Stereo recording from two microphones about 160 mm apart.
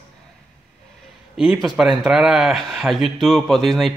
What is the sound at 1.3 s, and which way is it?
A man's voice, centre (ahead or behind).